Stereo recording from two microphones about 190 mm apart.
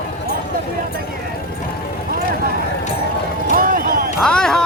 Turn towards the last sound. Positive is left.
turn(degrees=5)  # may be behind; listen again after turning